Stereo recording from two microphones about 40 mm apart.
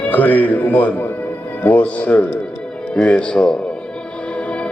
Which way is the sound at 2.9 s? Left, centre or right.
Left.